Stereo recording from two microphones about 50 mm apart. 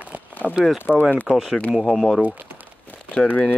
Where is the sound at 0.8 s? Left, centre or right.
Left.